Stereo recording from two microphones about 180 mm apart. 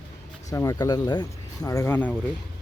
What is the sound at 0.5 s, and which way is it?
Speech, 20° left (ahead or behind).